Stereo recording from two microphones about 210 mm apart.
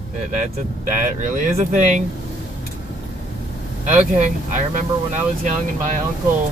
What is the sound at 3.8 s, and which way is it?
Speech, 35° right (ahead or behind).